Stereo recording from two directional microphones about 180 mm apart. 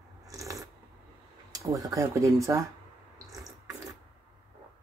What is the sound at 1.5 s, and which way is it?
Speech, 20° right (ahead or behind).